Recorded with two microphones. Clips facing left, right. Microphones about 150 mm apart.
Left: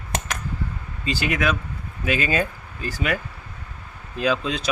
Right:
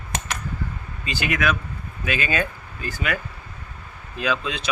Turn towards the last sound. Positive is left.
turn(degrees=40)  # may be behind; listen again after turning